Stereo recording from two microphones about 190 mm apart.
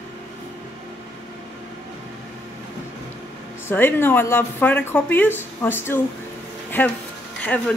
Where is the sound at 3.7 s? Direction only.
10° left (ahead or behind).